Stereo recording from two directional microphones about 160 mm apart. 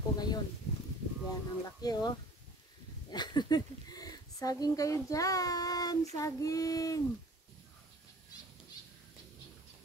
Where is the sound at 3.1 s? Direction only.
25° left (ahead or behind).